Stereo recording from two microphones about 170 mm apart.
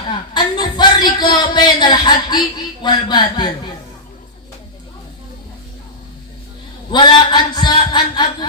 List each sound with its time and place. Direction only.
0.1 s speech: 25° left (ahead or behind)
6.9 s a man's voice: 25° left (ahead or behind)